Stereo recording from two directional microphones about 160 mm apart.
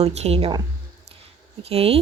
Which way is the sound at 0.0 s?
40° right (ahead or behind).